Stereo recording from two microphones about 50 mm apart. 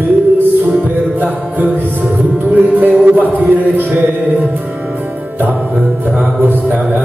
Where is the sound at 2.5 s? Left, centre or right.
Right.